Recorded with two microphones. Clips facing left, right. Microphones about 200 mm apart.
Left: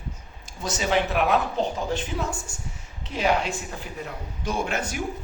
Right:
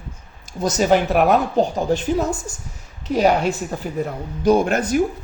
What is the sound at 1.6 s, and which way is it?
Speech, 35° right (ahead or behind).